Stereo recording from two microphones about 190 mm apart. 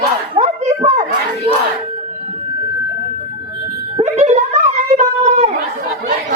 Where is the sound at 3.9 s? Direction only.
35° right (ahead or behind).